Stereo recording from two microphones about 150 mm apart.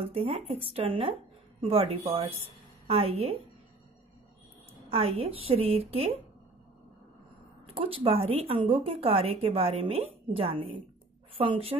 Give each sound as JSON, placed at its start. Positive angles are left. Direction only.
{"t": 0.0, "sound": "a woman's voice", "side_deg": -40}
{"t": 4.8, "sound": "a woman's voice", "side_deg": -40}
{"t": 7.7, "sound": "a woman's voice", "side_deg": -40}